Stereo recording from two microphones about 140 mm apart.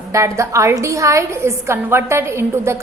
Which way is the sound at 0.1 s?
20° right (ahead or behind).